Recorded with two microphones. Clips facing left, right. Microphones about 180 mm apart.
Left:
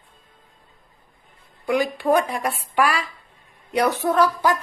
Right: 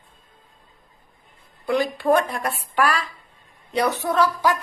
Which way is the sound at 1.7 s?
15° left (ahead or behind).